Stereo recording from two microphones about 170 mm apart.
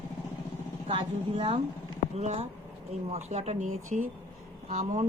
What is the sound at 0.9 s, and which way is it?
Speech, 35° right (ahead or behind).